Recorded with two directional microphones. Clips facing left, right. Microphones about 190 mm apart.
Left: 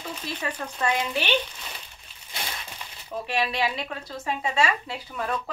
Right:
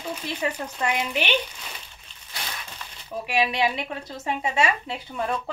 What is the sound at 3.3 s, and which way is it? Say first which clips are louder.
A woman's voice: right 3 dB; 15° right (ahead or behind).